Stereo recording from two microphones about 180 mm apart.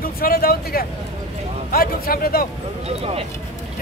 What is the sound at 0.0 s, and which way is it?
Speech, 55° left (ahead or behind).